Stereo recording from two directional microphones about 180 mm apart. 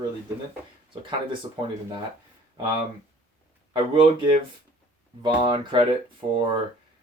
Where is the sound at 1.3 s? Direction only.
30° right (ahead or behind).